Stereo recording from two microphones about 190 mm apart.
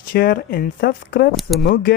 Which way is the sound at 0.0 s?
50° left (ahead or behind).